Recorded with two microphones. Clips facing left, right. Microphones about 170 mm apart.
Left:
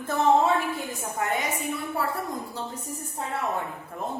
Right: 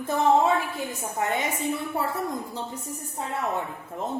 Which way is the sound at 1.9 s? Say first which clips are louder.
Right 1 dB; 20° right (ahead or behind).